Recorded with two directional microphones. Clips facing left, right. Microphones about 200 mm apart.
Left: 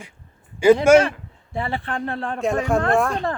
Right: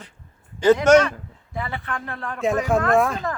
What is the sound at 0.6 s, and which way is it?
Speech, 10° left (ahead or behind).